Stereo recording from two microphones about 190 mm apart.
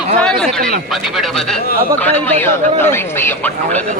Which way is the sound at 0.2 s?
5° left (ahead or behind).